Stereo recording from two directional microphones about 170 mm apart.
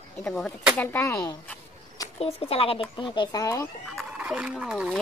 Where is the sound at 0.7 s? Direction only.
15° left (ahead or behind).